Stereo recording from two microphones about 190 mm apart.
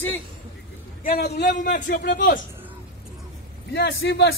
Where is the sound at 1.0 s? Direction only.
55° left (ahead or behind).